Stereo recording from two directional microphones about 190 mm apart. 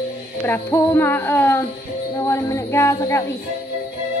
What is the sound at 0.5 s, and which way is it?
A woman's voice, 10° left (ahead or behind).